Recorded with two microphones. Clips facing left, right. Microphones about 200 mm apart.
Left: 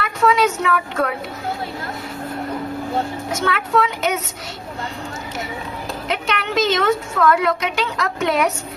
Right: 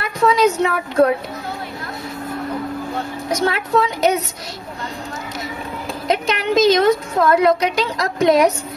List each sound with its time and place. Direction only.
0.0 s speech: 35° right (ahead or behind)
3.3 s a woman's voice: 35° right (ahead or behind)
6.0 s a woman's voice: 35° right (ahead or behind)